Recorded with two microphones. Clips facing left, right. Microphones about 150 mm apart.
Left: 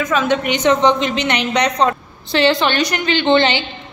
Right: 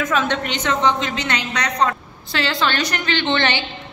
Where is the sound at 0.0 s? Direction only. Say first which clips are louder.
Left 4 dB; centre (ahead or behind).